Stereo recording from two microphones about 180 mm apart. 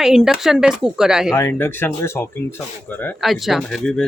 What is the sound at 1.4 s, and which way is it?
Speech, 10° left (ahead or behind).